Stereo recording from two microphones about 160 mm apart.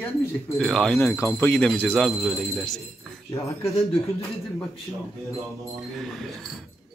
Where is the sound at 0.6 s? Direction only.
5° left (ahead or behind).